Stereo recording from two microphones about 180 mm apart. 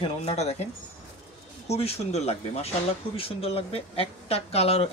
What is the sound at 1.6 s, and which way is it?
Speech, 35° left (ahead or behind).